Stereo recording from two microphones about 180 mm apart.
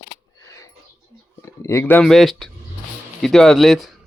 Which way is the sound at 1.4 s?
15° left (ahead or behind).